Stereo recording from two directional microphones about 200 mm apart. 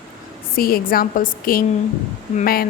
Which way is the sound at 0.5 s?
45° left (ahead or behind).